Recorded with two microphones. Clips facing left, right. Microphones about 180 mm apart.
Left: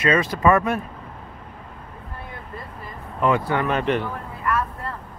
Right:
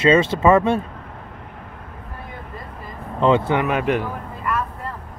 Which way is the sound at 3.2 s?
25° right (ahead or behind).